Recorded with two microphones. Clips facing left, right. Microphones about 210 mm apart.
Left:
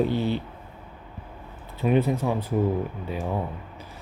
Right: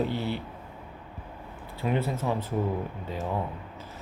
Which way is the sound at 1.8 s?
15° left (ahead or behind).